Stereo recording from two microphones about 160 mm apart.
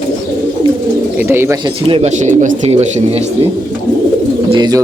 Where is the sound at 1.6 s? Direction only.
35° right (ahead or behind).